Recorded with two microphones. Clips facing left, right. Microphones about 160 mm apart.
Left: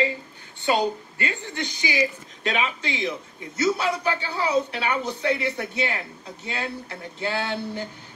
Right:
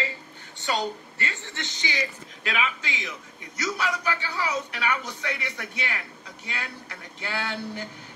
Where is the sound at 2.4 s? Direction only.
35° left (ahead or behind).